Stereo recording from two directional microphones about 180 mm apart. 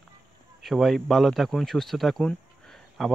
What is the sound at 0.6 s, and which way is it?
Speech, centre (ahead or behind).